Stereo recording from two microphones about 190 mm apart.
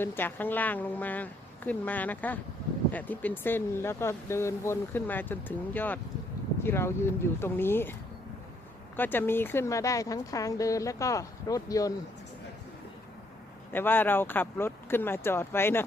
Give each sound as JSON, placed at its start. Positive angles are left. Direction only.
{"t": 0.0, "sound": "speech", "side_deg": 10}
{"t": 9.0, "sound": "speech", "side_deg": 10}
{"t": 13.7, "sound": "speech", "side_deg": 10}